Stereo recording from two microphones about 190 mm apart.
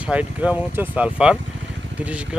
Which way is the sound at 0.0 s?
5° right (ahead or behind).